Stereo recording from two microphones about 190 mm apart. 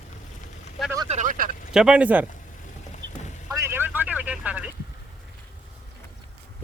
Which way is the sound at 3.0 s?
75° right (ahead or behind).